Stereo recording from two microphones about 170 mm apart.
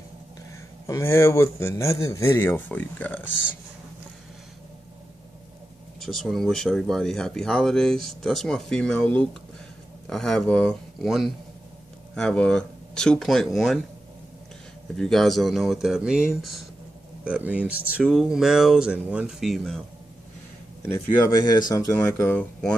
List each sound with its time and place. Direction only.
0.8 s speech: 15° left (ahead or behind)
5.9 s speech: centre (ahead or behind)
15.0 s speech: centre (ahead or behind)
21.5 s speech: 25° left (ahead or behind)